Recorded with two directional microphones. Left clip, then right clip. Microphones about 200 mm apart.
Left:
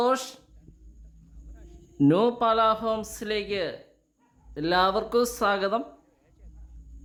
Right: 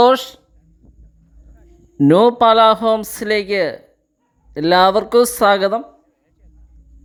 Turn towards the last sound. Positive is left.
turn(degrees=-30)  # may be behind; listen again after turning